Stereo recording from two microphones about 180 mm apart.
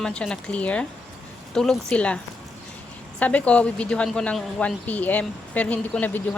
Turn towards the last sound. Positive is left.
turn(degrees=10)  # may be behind; listen again after turning